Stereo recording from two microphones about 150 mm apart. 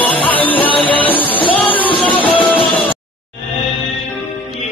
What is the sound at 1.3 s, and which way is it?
Music, 35° left (ahead or behind).